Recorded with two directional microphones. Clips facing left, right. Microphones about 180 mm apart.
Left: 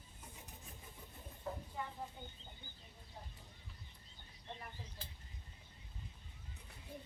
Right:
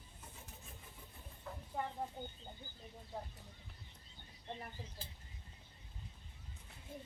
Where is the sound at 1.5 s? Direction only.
35° left (ahead or behind).